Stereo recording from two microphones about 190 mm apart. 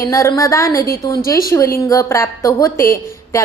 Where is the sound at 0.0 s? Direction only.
15° left (ahead or behind).